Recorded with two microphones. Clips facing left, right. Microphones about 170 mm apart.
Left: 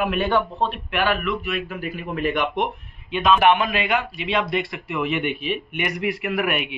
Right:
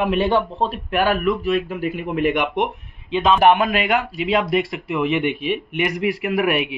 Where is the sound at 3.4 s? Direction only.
40° right (ahead or behind).